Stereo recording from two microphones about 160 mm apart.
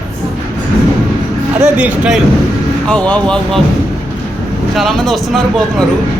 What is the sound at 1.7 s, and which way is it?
Speech, 5° right (ahead or behind).